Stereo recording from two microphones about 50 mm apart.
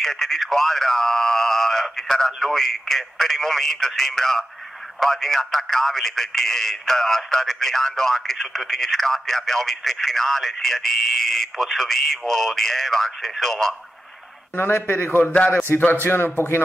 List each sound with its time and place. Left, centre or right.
0.0 s speech: centre
14.6 s a man's voice: left